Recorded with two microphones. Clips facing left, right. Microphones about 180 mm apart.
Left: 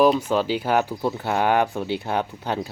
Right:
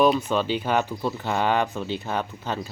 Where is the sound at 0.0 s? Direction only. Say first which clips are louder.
Left 2 dB; 10° left (ahead or behind).